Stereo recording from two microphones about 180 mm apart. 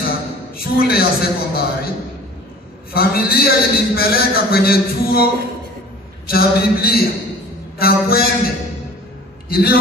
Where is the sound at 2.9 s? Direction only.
60° left (ahead or behind).